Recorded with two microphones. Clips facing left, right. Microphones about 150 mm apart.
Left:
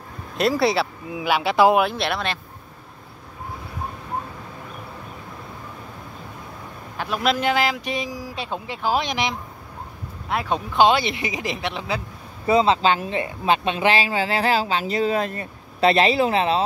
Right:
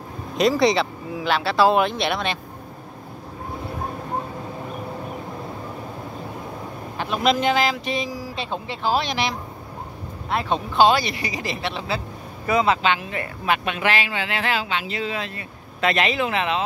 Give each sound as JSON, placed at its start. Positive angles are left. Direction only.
{"t": 0.4, "sound": "speech", "side_deg": 5}
{"t": 1.8, "sound": "speech", "side_deg": 5}
{"t": 7.0, "sound": "speech", "side_deg": 5}
{"t": 10.9, "sound": "speech", "side_deg": 20}
{"t": 12.4, "sound": "a woman's voice", "side_deg": 30}